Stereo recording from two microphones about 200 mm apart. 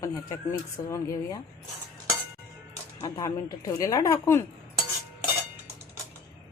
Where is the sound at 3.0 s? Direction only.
20° left (ahead or behind).